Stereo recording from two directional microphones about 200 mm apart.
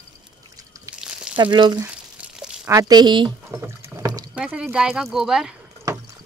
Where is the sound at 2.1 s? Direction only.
5° right (ahead or behind).